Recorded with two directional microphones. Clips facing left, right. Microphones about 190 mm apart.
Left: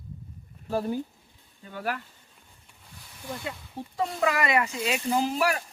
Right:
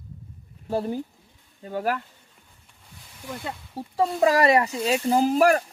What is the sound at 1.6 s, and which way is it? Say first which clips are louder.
Speech: right 6 dB; 40° right (ahead or behind).